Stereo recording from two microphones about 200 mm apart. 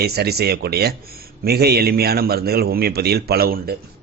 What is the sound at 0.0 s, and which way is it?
A man's voice, 55° right (ahead or behind).